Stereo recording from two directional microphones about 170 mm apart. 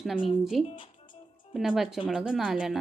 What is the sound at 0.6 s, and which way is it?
Speech, 30° left (ahead or behind).